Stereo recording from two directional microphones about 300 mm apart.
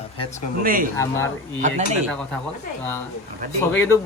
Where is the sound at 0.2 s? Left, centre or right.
Left.